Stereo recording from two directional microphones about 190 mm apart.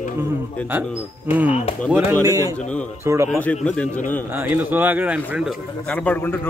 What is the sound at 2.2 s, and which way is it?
Speech, 15° right (ahead or behind).